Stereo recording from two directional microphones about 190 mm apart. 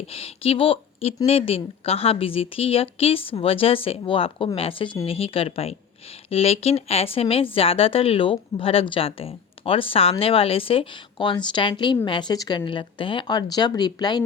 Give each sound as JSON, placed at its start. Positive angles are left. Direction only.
{"t": 0.1, "sound": "speech", "side_deg": 30}